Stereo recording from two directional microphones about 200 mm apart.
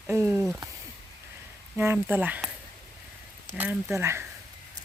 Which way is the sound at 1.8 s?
10° right (ahead or behind).